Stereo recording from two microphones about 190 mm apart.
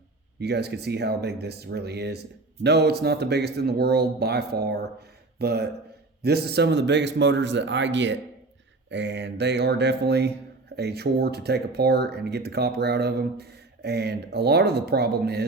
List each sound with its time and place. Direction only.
0.3 s speech: 60° right (ahead or behind)